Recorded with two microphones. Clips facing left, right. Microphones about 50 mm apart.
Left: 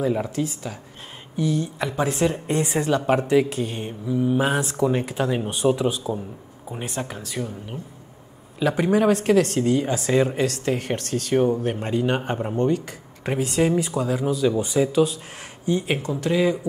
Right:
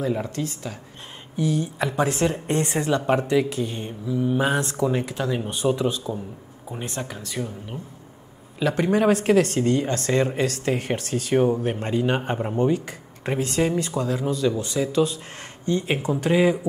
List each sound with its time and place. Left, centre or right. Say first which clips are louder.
0.0 s speech: left 2 dB; centre
3.6 s speech: left 1 dB; centre
4.2 s speech: left 1 dB; centre
8.5 s speech: left 1 dB; centre
16.0 s speech: right 2 dB; right